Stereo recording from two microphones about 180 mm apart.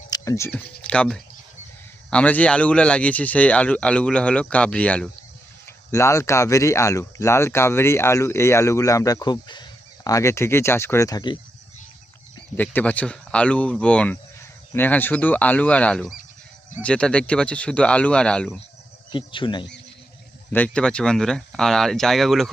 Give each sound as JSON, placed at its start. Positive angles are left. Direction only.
{"t": 0.1, "sound": "a sound", "side_deg": 15}
{"t": 0.5, "sound": "speech", "side_deg": 5}
{"t": 12.5, "sound": "speech", "side_deg": 10}
{"t": 19.1, "sound": "speech", "side_deg": 25}
{"t": 20.5, "sound": "speech", "side_deg": 5}